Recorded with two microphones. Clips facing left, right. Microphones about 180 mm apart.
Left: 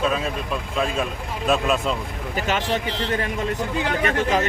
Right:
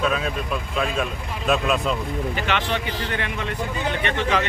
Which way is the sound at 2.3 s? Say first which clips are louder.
Left 5 dB; 40° left (ahead or behind).